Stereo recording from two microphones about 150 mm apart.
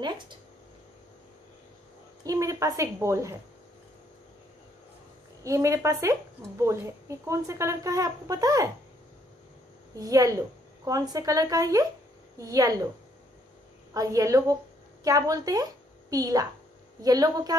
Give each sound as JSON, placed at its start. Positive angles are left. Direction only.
{"t": 2.2, "sound": "speech", "side_deg": -20}
{"t": 5.4, "sound": "speech", "side_deg": -20}
{"t": 9.9, "sound": "speech", "side_deg": -25}
{"t": 13.9, "sound": "a woman's voice", "side_deg": -20}